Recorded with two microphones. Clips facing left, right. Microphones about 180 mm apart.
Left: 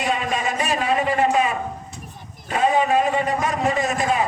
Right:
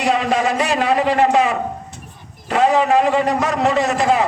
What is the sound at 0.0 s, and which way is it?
A man's voice, 80° right.